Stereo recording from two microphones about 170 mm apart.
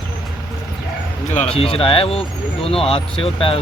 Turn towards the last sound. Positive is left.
turn(degrees=35)  # may be behind; listen again after turning